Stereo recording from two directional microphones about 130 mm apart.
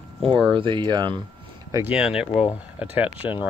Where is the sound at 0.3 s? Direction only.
40° right (ahead or behind).